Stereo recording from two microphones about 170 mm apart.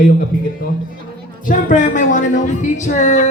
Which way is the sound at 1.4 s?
50° left (ahead or behind).